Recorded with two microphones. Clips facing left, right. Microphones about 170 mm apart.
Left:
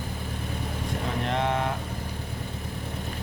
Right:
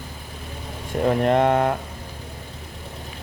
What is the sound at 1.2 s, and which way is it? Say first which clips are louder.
Speech: right 8 dB; 55° right (ahead or behind).